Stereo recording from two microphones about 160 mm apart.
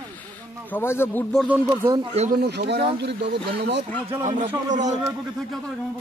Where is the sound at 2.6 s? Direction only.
90° right.